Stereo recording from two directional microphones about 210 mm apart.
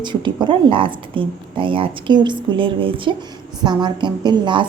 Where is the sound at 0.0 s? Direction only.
20° right (ahead or behind).